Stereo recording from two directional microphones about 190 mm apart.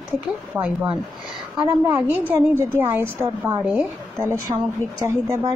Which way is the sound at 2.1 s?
10° right (ahead or behind).